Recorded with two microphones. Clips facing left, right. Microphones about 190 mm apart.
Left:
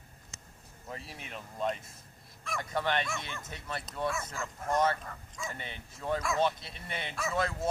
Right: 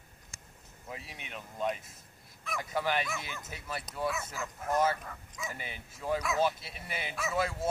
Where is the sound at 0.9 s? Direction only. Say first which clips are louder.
Left 1 dB; centre (ahead or behind).